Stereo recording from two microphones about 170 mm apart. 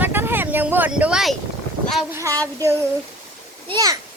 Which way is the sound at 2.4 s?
20° right (ahead or behind).